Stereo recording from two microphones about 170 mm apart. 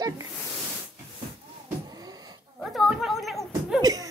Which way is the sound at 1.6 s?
20° right (ahead or behind).